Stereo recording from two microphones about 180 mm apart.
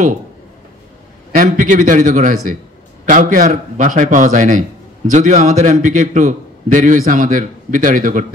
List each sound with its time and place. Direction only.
1.3 s a man's voice: 50° right (ahead or behind)